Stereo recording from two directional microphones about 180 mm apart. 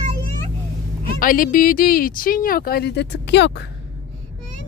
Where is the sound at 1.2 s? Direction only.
50° left (ahead or behind); by 3.5 s 75° left (ahead or behind).